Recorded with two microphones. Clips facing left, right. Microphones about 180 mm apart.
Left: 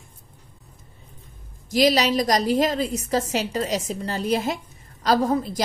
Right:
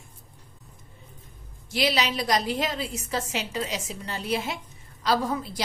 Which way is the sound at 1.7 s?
40° left (ahead or behind).